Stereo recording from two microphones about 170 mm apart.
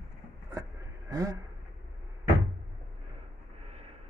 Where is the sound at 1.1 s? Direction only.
20° right (ahead or behind).